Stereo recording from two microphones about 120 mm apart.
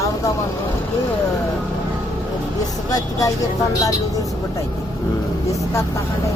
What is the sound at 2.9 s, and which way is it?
Speech, 30° left (ahead or behind).